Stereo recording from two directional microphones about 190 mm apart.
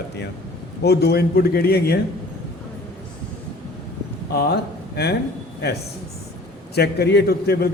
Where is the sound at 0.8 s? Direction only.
60° left (ahead or behind).